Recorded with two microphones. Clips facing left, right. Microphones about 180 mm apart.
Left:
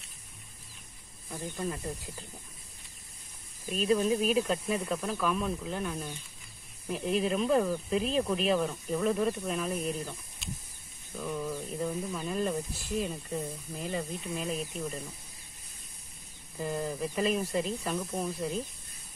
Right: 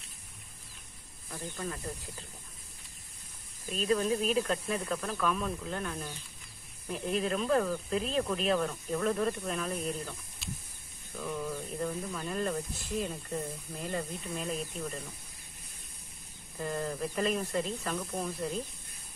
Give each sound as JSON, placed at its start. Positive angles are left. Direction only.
{"t": 1.3, "sound": "speech", "side_deg": 10}
{"t": 3.7, "sound": "speech", "side_deg": 10}
{"t": 11.1, "sound": "speech", "side_deg": 5}
{"t": 16.5, "sound": "speech", "side_deg": 10}